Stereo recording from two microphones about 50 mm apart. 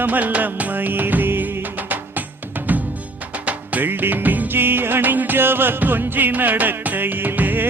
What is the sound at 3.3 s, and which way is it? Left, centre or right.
Music, right.